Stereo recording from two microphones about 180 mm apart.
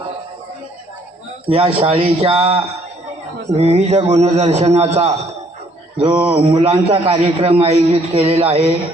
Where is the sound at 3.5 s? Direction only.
35° right (ahead or behind).